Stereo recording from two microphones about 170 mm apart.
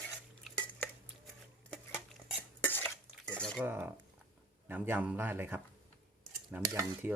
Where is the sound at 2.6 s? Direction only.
10° left (ahead or behind).